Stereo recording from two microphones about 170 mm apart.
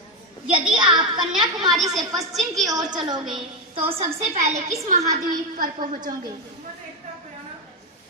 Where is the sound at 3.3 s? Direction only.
30° right (ahead or behind); by 6.1 s 50° right (ahead or behind).